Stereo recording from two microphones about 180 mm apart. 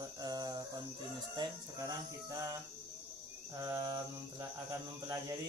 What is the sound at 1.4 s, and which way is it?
Cricket, 25° right (ahead or behind).